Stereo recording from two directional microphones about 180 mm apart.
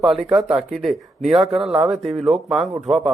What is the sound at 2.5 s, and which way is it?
Speech, 5° right (ahead or behind).